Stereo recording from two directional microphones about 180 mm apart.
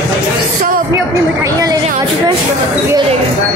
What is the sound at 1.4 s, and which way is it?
Speech, 20° right (ahead or behind).